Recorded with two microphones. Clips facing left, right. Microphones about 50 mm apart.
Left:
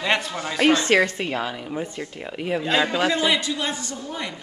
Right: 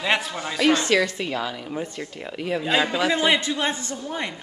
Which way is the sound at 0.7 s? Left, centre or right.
Left.